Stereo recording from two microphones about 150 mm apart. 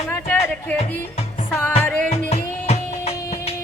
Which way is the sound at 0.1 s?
10° left (ahead or behind).